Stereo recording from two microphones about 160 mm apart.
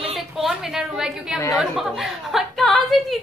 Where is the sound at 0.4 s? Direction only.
Centre (ahead or behind).